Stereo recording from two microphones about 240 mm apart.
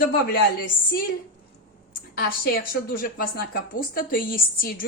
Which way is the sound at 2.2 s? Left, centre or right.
Left.